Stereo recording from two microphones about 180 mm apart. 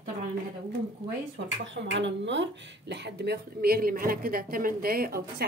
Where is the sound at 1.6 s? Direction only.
85° right.